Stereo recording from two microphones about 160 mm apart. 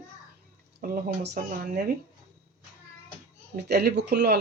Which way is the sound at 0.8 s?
80° right.